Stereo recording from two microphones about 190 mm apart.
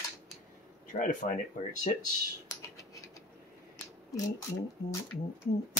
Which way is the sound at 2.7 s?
15° left (ahead or behind).